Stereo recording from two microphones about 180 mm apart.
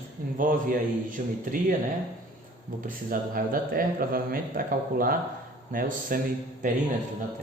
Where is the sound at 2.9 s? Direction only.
50° right (ahead or behind).